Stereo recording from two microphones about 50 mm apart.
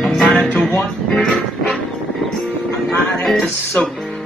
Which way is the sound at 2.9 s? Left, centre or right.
Centre.